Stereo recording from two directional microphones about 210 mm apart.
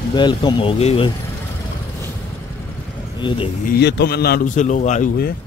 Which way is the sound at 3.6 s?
50° left (ahead or behind).